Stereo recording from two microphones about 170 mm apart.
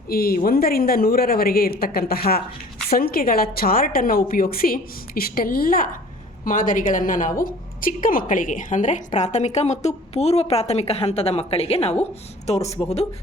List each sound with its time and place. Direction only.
0.1 s a woman's voice: 60° left (ahead or behind); by 13.1 s 40° left (ahead or behind)